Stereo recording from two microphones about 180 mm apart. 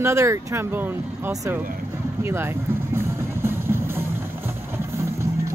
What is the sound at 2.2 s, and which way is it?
Music, 15° right (ahead or behind).